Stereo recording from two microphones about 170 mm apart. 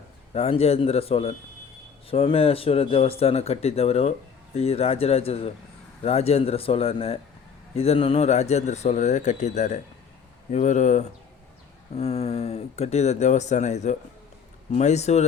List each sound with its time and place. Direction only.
0.3 s speech: 35° left (ahead or behind)